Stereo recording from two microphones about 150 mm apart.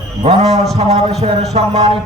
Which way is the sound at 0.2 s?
45° right (ahead or behind).